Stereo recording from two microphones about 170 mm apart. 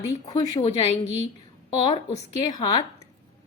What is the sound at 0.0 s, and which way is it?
Speech, 20° left (ahead or behind).